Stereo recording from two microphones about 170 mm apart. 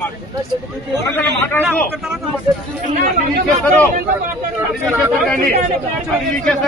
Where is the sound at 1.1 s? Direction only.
10° left (ahead or behind).